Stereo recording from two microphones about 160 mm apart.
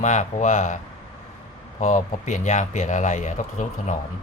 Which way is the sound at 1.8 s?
50° left (ahead or behind).